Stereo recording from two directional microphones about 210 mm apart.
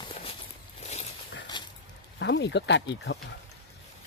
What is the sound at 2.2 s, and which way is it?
Speech, 55° left (ahead or behind).